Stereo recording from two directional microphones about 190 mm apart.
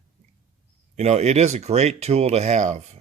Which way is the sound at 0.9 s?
35° right (ahead or behind).